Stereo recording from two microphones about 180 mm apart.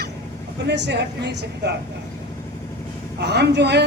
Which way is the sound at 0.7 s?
70° right (ahead or behind).